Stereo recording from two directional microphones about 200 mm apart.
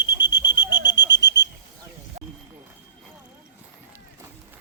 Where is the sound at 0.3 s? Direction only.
70° left (ahead or behind).